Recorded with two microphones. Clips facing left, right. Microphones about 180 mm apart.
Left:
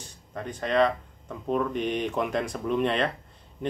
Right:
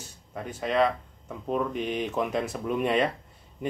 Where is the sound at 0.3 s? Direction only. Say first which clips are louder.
Left 1 dB; 5° right (ahead or behind).